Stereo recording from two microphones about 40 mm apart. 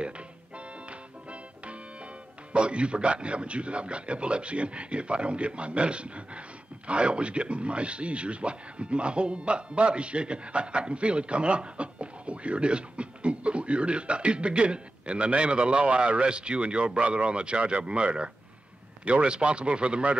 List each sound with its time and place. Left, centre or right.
0.8 s music: right
2.5 s speech: right